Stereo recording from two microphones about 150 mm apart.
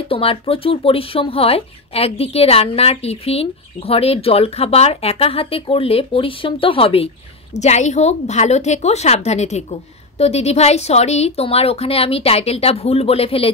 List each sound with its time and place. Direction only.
0.1 s speech: 40° left (ahead or behind)
7.5 s a woman's voice: 50° left (ahead or behind)